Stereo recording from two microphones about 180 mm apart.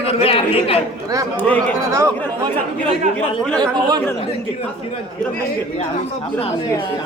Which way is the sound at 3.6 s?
25° right (ahead or behind).